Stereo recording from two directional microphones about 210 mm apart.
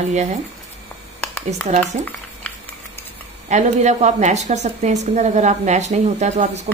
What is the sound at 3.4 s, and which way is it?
A woman's voice, 35° right (ahead or behind).